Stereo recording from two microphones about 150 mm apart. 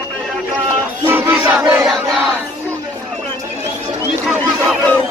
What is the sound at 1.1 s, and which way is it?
Battle cry, 15° right (ahead or behind).